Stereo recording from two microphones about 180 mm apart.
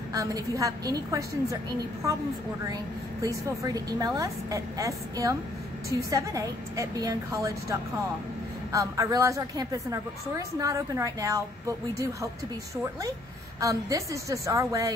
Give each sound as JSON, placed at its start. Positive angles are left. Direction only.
{"t": 0.1, "sound": "a woman's voice", "side_deg": -20}
{"t": 3.2, "sound": "a woman's voice", "side_deg": -20}
{"t": 13.6, "sound": "a woman's voice", "side_deg": -20}